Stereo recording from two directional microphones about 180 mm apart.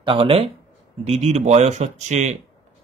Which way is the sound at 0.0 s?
30° right (ahead or behind).